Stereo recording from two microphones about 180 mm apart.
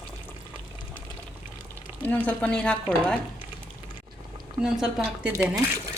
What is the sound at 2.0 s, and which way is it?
Speech, 10° left (ahead or behind).